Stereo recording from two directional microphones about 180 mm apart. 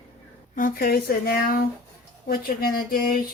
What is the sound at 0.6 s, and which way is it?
Speech, 50° left (ahead or behind).